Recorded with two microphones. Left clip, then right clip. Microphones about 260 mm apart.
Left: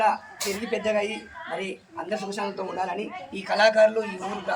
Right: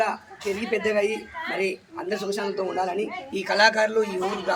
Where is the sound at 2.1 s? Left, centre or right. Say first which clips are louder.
Right 3 dB; centre.